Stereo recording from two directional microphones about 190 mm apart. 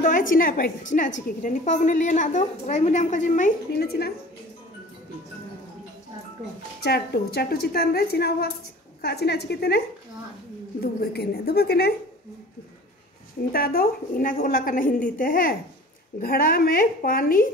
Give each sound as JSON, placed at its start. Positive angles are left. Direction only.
{"t": 0.0, "sound": "a woman's voice", "side_deg": 45}
{"t": 6.8, "sound": "a woman's voice", "side_deg": 55}
{"t": 13.5, "sound": "a woman's voice", "side_deg": 50}